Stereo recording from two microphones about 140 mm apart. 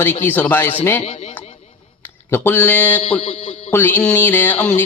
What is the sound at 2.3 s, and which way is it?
A man's voice, 15° left (ahead or behind).